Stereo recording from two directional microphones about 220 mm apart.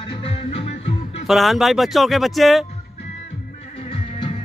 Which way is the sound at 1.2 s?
Centre (ahead or behind).